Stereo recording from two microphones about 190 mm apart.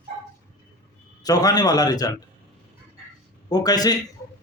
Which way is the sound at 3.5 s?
20° left (ahead or behind).